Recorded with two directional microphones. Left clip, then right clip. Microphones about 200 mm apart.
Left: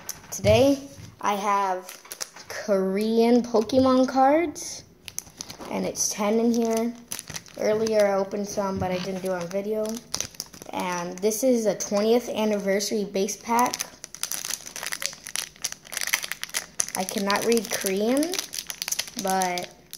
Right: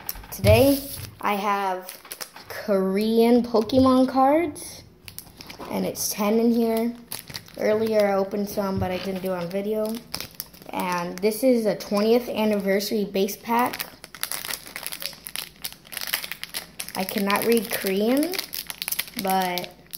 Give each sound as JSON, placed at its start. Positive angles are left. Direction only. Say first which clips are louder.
{"t": 0.3, "sound": "speech", "louder": "right 1 dB", "side_deg": 0}
{"t": 6.7, "sound": "speech", "louder": "right 1 dB", "side_deg": 15}
{"t": 7.5, "sound": "speech", "louder": "right 1 dB", "side_deg": 5}
{"t": 9.9, "sound": "crumpling", "louder": "left 2 dB", "side_deg": 10}
{"t": 11.4, "sound": "speech", "louder": "right 2 dB", "side_deg": 10}
{"t": 14.4, "sound": "crumpling", "louder": "even", "side_deg": 10}